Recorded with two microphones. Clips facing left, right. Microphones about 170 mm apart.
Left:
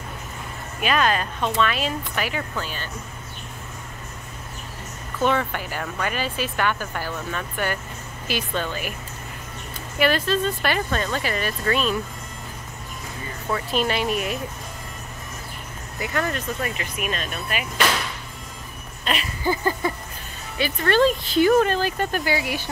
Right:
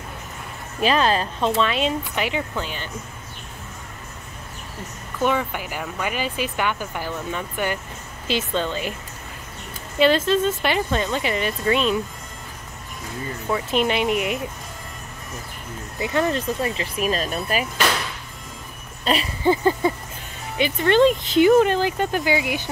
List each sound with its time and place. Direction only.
0.7 s speech: 30° right (ahead or behind)
5.2 s speech: 10° right (ahead or behind)
9.9 s speech: 20° right (ahead or behind)
13.5 s speech: 20° right (ahead or behind)
16.0 s speech: 20° right (ahead or behind)
19.0 s a sound: 30° right (ahead or behind)
20.5 s speech: 20° right (ahead or behind)